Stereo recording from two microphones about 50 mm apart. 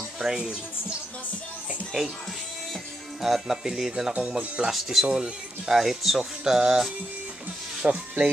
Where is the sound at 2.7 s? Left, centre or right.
Centre.